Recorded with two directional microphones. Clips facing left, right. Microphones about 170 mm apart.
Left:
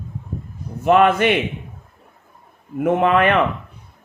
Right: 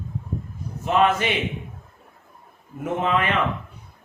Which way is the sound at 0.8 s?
60° left (ahead or behind).